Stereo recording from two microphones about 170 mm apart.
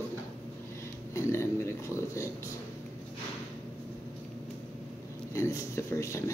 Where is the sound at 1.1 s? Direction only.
15° left (ahead or behind).